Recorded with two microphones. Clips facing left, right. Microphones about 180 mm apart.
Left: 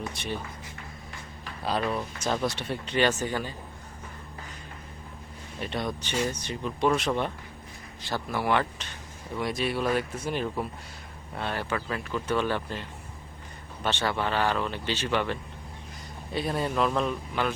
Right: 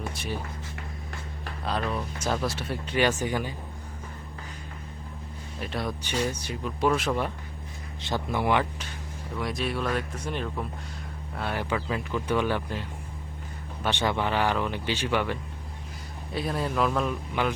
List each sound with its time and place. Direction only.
0.1 s speech: 5° right (ahead or behind)
1.6 s speech: 5° left (ahead or behind)
5.5 s speech: centre (ahead or behind)
8.0 s speech: 20° right (ahead or behind)
9.4 s speech: centre (ahead or behind)
11.3 s speech: 10° right (ahead or behind)
16.3 s speech: centre (ahead or behind)
17.4 s speech: 15° right (ahead or behind)